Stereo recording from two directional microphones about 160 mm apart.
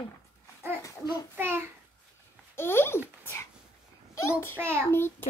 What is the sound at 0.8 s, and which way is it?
Babbling, 25° left (ahead or behind).